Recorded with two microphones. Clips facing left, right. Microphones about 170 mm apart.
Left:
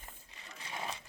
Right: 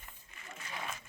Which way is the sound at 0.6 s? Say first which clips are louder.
Left 2 dB; 30° left (ahead or behind).